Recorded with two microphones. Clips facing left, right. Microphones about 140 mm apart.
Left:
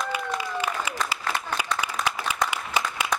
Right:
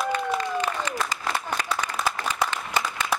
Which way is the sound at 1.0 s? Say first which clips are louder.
Right 1 dB; 10° left (ahead or behind).